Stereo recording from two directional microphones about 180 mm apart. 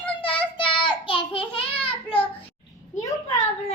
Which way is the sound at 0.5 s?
30° left (ahead or behind).